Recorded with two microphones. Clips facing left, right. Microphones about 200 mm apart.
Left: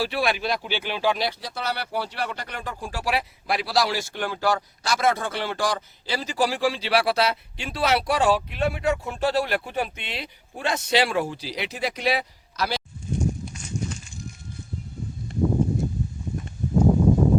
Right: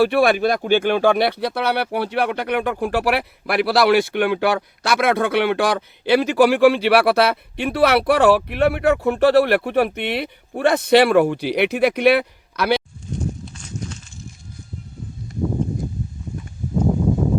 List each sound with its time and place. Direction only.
0.0 s speech: 55° right (ahead or behind)
13.6 s walk: 10° left (ahead or behind)